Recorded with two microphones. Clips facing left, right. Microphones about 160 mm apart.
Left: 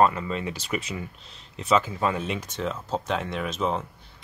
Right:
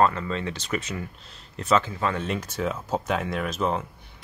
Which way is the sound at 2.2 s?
5° right (ahead or behind).